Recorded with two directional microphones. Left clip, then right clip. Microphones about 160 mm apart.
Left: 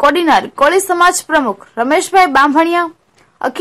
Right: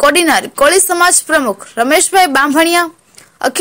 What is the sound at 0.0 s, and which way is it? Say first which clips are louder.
A woman's voice: even; 20° right (ahead or behind).